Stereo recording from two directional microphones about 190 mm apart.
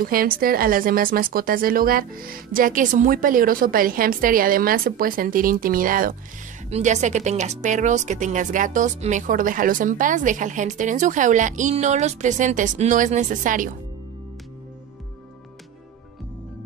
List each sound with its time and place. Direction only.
0.0 s speech: 50° right (ahead or behind)
6.7 s speech: 35° right (ahead or behind)